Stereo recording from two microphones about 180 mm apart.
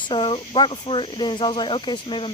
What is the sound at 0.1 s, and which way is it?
Speech, 25° left (ahead or behind).